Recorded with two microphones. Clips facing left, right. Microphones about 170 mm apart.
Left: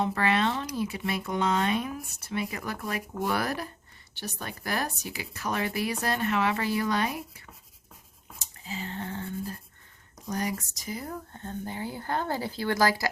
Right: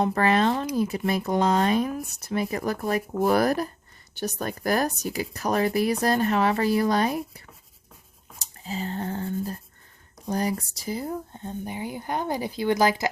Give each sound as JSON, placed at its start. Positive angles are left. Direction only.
{"t": 0.0, "sound": "speech", "side_deg": -40}
{"t": 8.4, "sound": "a sound", "side_deg": -35}
{"t": 10.2, "sound": "speech", "side_deg": -30}